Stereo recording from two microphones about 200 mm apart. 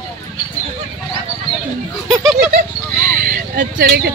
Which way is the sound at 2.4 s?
40° right (ahead or behind).